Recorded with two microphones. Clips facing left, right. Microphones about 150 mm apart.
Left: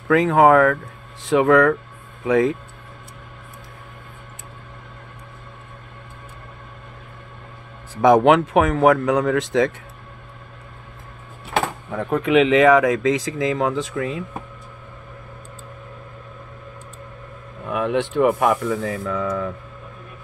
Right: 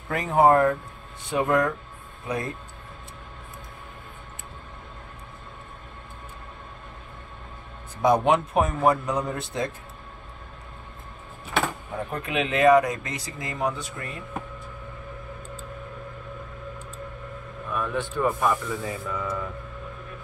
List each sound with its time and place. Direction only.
0.1 s speech: 90° left
8.0 s speech: 90° left
11.9 s speech: 80° left
17.6 s speech: 80° left